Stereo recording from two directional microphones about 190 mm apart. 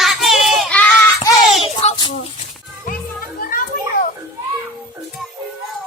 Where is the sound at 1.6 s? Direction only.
30° left (ahead or behind).